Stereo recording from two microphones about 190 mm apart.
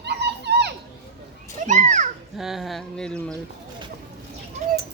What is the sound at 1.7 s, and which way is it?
Children playing, 40° right (ahead or behind).